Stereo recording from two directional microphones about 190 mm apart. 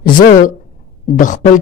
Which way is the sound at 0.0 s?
45° left (ahead or behind).